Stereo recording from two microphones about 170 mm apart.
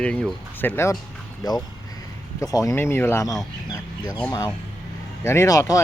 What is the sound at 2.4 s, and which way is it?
Speech, 20° left (ahead or behind).